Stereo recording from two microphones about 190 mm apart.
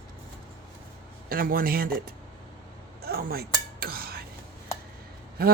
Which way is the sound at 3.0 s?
55° right (ahead or behind).